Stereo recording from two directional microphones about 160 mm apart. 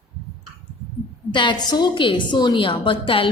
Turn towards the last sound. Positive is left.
turn(degrees=35)  # may be behind; listen again after turning